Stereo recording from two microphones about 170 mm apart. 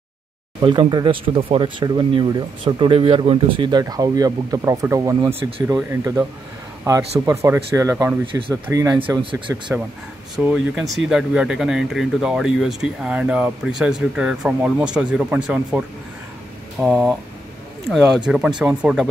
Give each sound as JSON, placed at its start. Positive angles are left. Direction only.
{"t": 0.6, "sound": "speech", "side_deg": -25}
{"t": 7.2, "sound": "speech", "side_deg": -15}
{"t": 10.3, "sound": "speech", "side_deg": -5}
{"t": 16.8, "sound": "speech", "side_deg": -5}